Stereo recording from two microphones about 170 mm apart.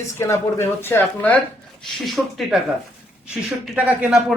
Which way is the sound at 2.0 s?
Centre (ahead or behind).